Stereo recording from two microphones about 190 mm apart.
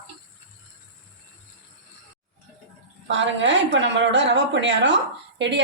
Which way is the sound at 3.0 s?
70° right (ahead or behind).